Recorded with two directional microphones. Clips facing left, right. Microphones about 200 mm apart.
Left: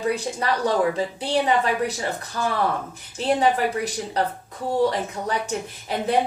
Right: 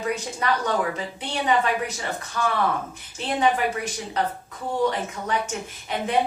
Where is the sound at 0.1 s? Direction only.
35° left (ahead or behind).